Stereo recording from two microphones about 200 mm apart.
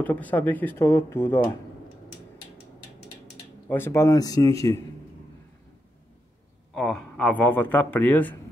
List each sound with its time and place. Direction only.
0.0 s a man's voice: 10° left (ahead or behind)
3.6 s a man's voice: 10° left (ahead or behind)
6.7 s a man's voice: 5° left (ahead or behind)